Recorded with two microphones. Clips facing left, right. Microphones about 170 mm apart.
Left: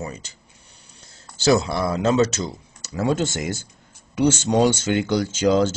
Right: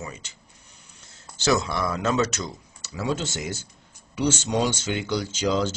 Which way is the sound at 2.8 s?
45° left (ahead or behind).